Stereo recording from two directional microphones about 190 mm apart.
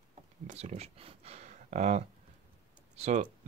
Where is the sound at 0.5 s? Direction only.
35° right (ahead or behind).